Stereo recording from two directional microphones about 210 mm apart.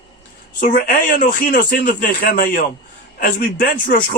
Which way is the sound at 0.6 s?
40° left (ahead or behind).